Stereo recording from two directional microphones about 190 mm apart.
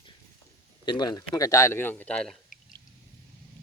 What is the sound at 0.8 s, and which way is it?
A man's voice, 25° left (ahead or behind).